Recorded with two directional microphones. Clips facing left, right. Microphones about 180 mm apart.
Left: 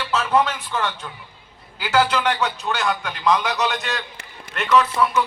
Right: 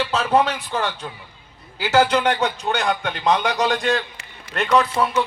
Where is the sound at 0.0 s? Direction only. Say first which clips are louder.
Right 1 dB; 30° right (ahead or behind).